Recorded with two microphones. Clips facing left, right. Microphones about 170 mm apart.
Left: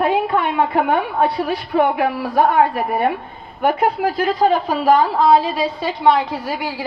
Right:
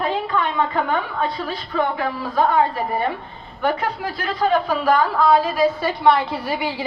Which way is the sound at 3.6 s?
45° left (ahead or behind).